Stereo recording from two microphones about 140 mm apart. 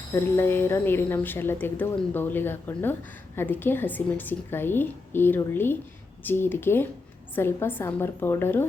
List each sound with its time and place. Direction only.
0.1 s a woman's voice: 15° left (ahead or behind)